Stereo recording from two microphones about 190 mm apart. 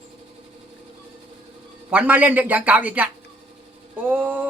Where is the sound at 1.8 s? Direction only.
5° right (ahead or behind).